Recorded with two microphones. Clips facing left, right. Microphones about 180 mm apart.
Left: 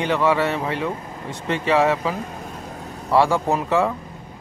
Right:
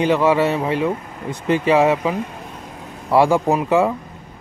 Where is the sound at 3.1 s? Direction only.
20° right (ahead or behind).